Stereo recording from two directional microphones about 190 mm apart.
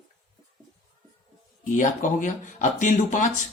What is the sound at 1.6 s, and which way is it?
Speech, 40° left (ahead or behind).